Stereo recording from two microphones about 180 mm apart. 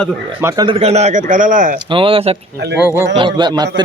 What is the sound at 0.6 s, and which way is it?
A man's voice, 35° right (ahead or behind).